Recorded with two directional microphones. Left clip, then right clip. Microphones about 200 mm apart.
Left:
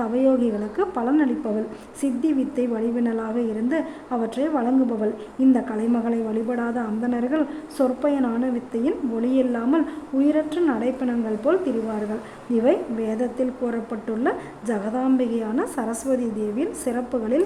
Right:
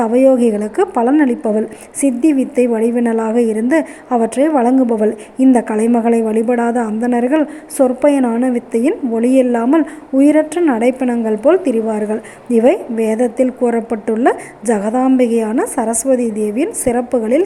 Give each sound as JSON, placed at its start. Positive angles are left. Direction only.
{"t": 0.0, "sound": "a woman's voice", "side_deg": -15}